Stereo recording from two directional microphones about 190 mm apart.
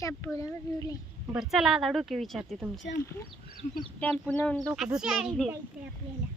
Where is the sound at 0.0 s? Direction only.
15° left (ahead or behind).